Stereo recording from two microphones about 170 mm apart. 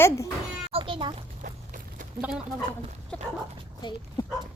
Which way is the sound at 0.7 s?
30° right (ahead or behind).